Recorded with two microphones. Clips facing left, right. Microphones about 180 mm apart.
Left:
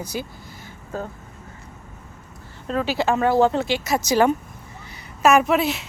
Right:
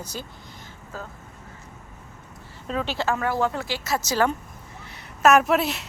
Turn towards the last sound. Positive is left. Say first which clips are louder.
# left 2 dB
turn(degrees=0)  # may be behind; listen again after turning